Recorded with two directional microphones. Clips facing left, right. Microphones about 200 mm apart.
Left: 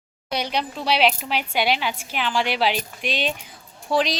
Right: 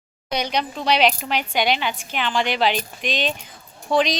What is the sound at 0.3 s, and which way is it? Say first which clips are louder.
Speech: right 2 dB; 5° left (ahead or behind).